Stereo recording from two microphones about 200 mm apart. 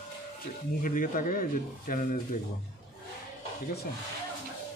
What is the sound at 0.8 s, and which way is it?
Speech, 45° left (ahead or behind).